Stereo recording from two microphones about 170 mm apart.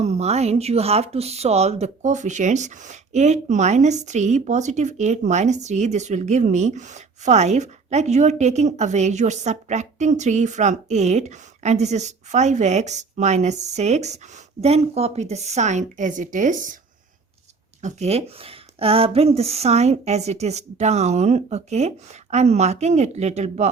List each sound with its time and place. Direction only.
0.0 s speech: 40° right (ahead or behind)
17.8 s speech: 40° right (ahead or behind)